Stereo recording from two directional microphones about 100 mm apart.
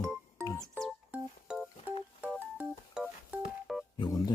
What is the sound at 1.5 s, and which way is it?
Music, 5° right (ahead or behind).